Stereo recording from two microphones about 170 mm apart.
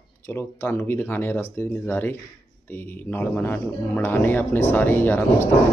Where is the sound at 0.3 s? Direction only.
15° left (ahead or behind).